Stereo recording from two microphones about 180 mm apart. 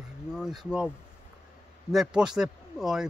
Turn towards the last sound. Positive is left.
turn(degrees=-5)  # may be behind; listen again after turning